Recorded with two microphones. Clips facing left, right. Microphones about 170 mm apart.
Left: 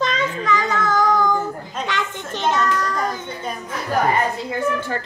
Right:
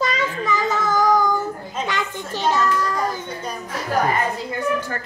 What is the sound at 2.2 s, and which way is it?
A child's voice, 5° right (ahead or behind).